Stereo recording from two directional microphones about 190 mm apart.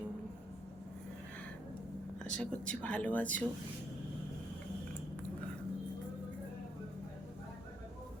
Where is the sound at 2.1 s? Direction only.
5° left (ahead or behind).